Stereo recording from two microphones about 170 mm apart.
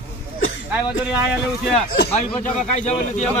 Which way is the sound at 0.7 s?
10° right (ahead or behind).